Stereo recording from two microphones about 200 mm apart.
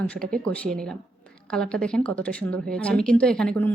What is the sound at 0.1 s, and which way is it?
A woman's voice, 5° left (ahead or behind).